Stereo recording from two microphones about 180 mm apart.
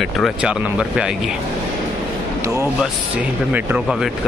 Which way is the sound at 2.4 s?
15° right (ahead or behind).